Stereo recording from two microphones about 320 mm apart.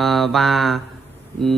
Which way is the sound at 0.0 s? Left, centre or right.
Centre.